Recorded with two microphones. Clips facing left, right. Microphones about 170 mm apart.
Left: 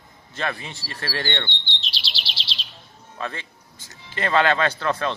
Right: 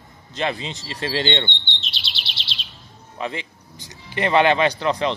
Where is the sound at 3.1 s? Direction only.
15° right (ahead or behind).